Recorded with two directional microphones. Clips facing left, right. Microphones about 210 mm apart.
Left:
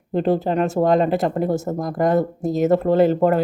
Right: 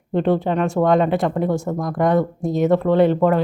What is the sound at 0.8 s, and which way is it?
Speech, 25° left (ahead or behind).